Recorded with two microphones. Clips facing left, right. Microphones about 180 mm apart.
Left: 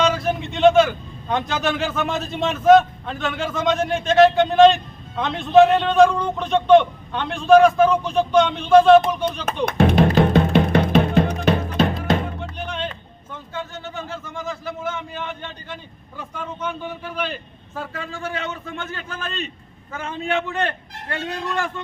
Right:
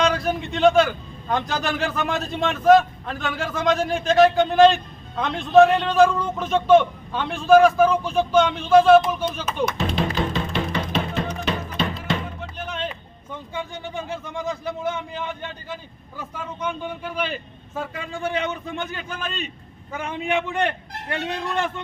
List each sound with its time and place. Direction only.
0.0 s a man's voice: centre (ahead or behind)
9.6 s speech: 60° left (ahead or behind)
10.2 s music: 60° left (ahead or behind)
11.8 s music: 45° left (ahead or behind)
12.6 s music: 5° right (ahead or behind)
13.5 s speech: 15° right (ahead or behind)
16.6 s a man's voice: 5° left (ahead or behind)
17.2 s speech: 5° right (ahead or behind)